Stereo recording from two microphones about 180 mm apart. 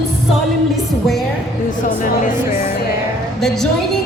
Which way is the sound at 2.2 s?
45° left (ahead or behind).